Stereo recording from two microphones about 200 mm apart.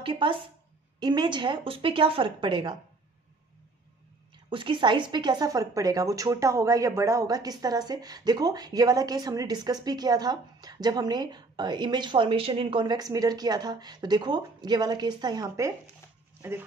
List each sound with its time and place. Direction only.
0.0 s speech: 25° right (ahead or behind)
4.5 s speech: 25° right (ahead or behind)